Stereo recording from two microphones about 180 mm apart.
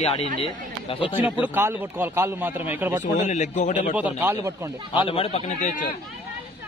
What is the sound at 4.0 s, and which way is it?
Speech, 10° right (ahead or behind).